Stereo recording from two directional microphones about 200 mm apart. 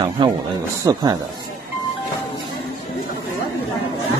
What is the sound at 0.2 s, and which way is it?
Speech, 25° right (ahead or behind).